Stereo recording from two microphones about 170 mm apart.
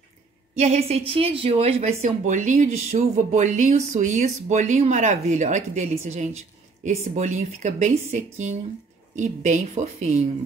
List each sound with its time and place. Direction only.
0.6 s a woman's voice: 40° right (ahead or behind)